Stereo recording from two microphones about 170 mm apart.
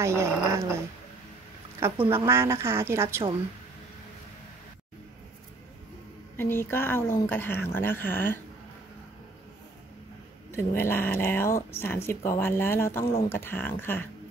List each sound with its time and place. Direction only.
0.0 s a woman's voice: 15° right (ahead or behind)
2.0 s speech: 30° right (ahead or behind)
2.2 s a woman's voice: 15° right (ahead or behind)
6.3 s speech: 15° left (ahead or behind)
10.5 s speech: 15° left (ahead or behind)